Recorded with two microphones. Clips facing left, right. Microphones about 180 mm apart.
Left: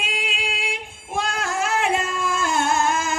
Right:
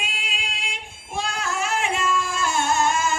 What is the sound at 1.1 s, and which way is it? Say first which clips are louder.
Female singing: left 2 dB; 55° left (ahead or behind).